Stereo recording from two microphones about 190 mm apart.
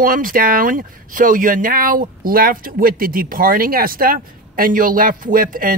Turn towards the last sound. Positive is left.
turn(degrees=-45)  # may be behind; listen again after turning